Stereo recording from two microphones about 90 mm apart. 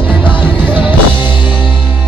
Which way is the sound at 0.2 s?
65° left (ahead or behind).